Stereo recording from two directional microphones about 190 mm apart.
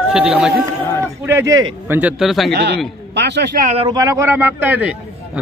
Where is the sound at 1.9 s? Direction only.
10° right (ahead or behind).